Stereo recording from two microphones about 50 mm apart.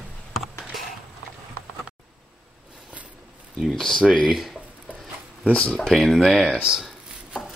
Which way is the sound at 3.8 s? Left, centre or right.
Centre.